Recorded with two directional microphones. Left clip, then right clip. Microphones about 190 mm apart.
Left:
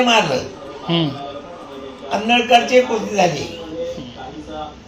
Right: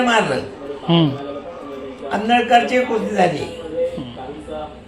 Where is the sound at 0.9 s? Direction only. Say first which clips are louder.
Right 3 dB; 35° right (ahead or behind).